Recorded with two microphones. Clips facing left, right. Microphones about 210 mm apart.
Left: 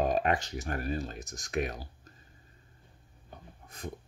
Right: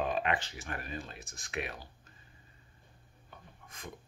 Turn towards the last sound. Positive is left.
turn(degrees=35)  # may be behind; listen again after turning